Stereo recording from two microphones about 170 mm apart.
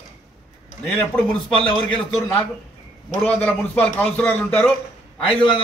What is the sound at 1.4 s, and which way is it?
Speech, 30° left (ahead or behind).